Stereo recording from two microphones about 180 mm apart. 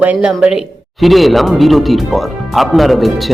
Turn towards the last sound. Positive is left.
turn(degrees=0)  # may be behind; listen again after turning